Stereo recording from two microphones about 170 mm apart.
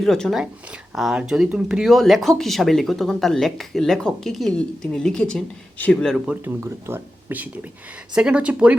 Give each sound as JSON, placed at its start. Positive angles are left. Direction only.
{"t": 0.0, "sound": "speech", "side_deg": 0}
{"t": 6.4, "sound": "speech", "side_deg": -15}